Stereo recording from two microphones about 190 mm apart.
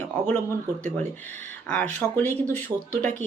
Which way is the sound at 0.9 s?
10° left (ahead or behind).